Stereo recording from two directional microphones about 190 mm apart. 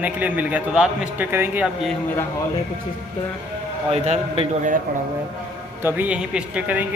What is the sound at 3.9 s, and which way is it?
Speech, 35° right (ahead or behind).